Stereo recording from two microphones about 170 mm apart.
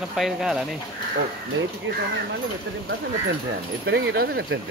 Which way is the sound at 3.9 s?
80° right.